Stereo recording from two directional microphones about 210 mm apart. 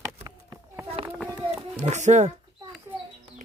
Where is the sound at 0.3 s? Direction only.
15° right (ahead or behind).